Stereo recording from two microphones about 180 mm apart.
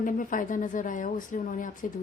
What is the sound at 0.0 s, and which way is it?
A woman's voice, 45° left (ahead or behind).